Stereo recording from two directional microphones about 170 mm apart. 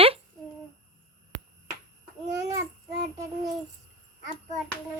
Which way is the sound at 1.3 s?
90° right.